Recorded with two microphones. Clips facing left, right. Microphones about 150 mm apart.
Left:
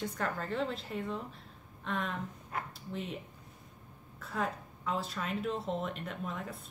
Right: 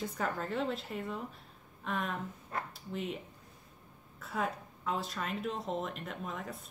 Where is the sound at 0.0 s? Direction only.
5° right (ahead or behind).